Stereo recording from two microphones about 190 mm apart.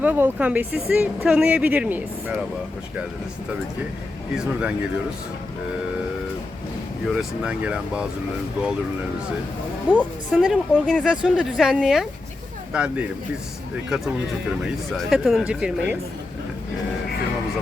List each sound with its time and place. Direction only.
0.0 s speech: 10° right (ahead or behind)
7.2 s speech: 5° right (ahead or behind)
9.9 s a woman's voice: 5° left (ahead or behind)